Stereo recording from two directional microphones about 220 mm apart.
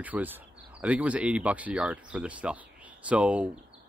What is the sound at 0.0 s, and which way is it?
Speech, 5° right (ahead or behind).